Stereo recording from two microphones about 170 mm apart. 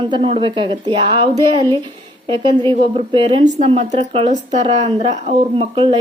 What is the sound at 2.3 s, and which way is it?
A woman's voice, 30° right (ahead or behind).